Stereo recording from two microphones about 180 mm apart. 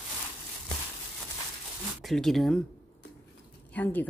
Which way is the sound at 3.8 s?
10° left (ahead or behind).